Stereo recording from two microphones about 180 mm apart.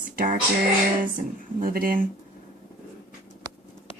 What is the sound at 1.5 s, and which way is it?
Speech, 50° right (ahead or behind).